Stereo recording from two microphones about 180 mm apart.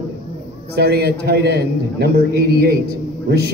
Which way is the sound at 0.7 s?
65° right (ahead or behind).